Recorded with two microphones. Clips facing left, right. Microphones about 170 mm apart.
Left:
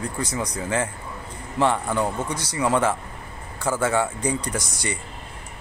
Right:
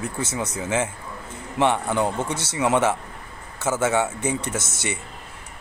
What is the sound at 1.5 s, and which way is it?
Speech, 20° right (ahead or behind).